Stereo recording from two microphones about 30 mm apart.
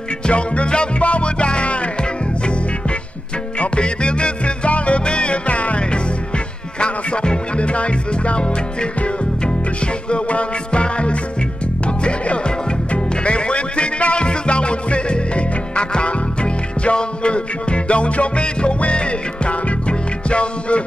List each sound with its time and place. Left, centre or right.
0.3 s music: left
3.5 s music: left
5.0 s music: left
6.8 s music: left
10.0 s music: left